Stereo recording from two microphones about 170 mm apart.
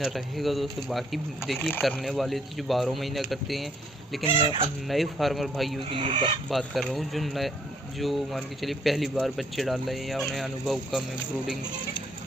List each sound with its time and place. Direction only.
0.0 s speech: centre (ahead or behind)
4.2 s speech: 30° right (ahead or behind)
4.8 s speech: centre (ahead or behind)
5.9 s speech: 35° right (ahead or behind)
6.5 s speech: centre (ahead or behind)